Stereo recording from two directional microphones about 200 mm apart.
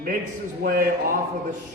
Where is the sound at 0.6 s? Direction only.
45° right (ahead or behind).